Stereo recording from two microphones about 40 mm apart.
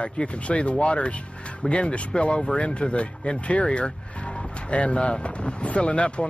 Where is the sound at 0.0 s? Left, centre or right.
Left.